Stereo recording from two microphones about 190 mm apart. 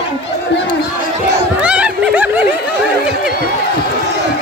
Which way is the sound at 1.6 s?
5° right (ahead or behind).